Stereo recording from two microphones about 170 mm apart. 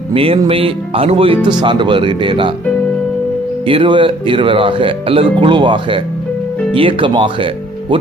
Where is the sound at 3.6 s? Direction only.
30° right (ahead or behind).